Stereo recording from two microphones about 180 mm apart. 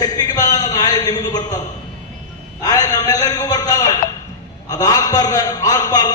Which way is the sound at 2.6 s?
20° left (ahead or behind).